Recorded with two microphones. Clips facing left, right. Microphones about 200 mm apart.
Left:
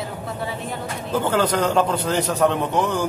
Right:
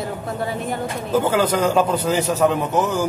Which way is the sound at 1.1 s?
10° right (ahead or behind).